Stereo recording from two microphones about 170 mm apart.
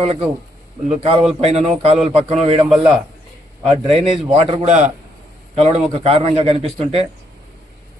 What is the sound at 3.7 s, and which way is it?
A man's voice, 30° right (ahead or behind).